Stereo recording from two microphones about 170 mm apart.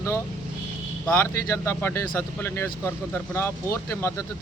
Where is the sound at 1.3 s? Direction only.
15° left (ahead or behind).